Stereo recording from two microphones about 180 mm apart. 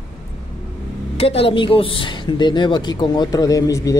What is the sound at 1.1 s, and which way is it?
A woman's voice, 30° left (ahead or behind).